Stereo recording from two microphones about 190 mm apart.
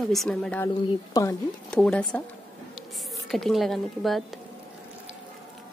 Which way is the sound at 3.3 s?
Centre (ahead or behind).